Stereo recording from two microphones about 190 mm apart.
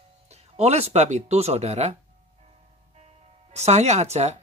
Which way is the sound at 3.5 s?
35° right (ahead or behind).